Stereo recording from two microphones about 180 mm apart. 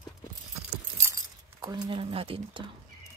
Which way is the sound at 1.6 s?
25° right (ahead or behind).